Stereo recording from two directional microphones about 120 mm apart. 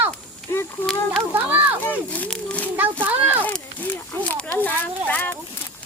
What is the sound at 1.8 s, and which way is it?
Speech, 15° left (ahead or behind).